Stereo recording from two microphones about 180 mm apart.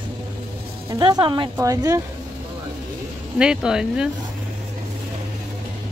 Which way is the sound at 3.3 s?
5° right (ahead or behind).